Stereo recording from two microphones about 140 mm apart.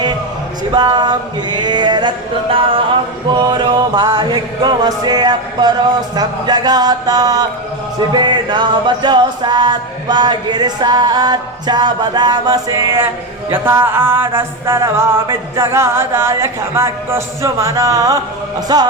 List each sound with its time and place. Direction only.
0.7 s music: 30° right (ahead or behind)